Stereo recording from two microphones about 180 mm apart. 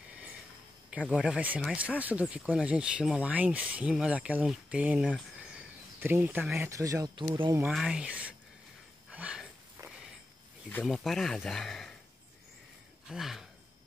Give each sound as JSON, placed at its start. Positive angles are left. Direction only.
{"t": 0.8, "sound": "speech", "side_deg": -5}
{"t": 6.7, "sound": "speech", "side_deg": -20}
{"t": 7.6, "sound": "speech", "side_deg": -5}
{"t": 9.1, "sound": "a sound", "side_deg": -5}
{"t": 10.7, "sound": "speech", "side_deg": 5}
{"t": 13.1, "sound": "speech", "side_deg": 0}